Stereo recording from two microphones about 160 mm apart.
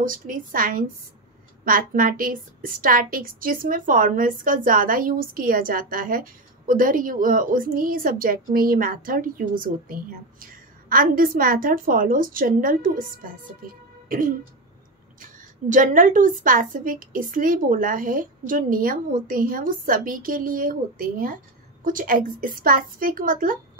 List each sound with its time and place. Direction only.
0.0 s a woman's voice: 60° right (ahead or behind)